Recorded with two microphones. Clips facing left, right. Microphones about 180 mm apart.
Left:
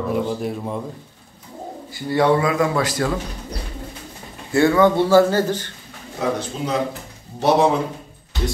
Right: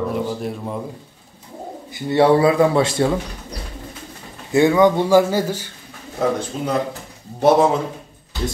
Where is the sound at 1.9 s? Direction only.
25° right (ahead or behind).